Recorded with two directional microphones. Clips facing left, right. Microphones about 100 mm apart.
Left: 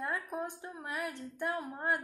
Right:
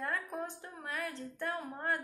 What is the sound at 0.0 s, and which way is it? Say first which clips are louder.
Speech: left 1 dB; 15° left (ahead or behind).